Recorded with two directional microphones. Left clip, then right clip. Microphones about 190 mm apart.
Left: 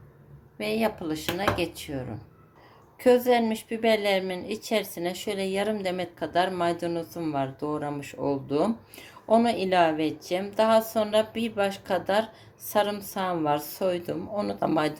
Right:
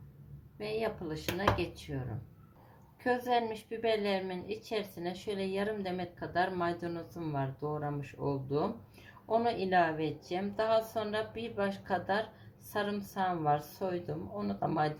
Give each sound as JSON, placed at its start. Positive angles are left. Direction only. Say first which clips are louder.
{"t": 0.6, "sound": "a woman's voice", "louder": "left 8 dB", "side_deg": 40}
{"t": 3.0, "sound": "a woman's voice", "louder": "left 10 dB", "side_deg": 35}